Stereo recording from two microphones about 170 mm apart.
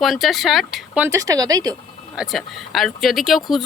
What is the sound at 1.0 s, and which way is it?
Speech, 20° right (ahead or behind).